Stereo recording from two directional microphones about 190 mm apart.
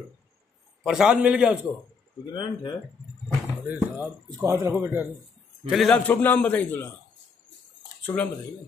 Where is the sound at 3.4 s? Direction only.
10° right (ahead or behind).